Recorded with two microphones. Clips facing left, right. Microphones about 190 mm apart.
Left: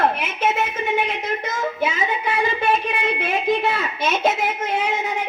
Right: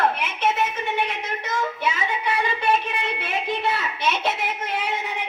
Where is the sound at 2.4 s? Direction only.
50° left (ahead or behind).